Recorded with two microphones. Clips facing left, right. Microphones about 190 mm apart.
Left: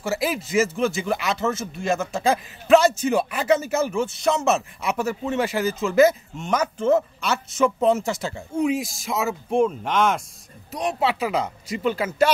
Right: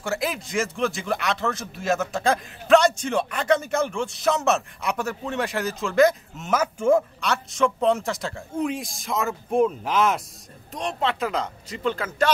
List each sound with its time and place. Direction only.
0.0 s speech: 5° left (ahead or behind)
7.0 s speech: 5° left (ahead or behind)
10.8 s speech: 10° left (ahead or behind)